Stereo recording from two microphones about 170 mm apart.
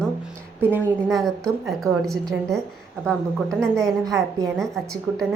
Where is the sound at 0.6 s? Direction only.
10° right (ahead or behind).